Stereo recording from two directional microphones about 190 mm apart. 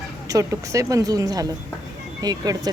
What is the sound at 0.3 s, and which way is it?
Speech, 15° right (ahead or behind).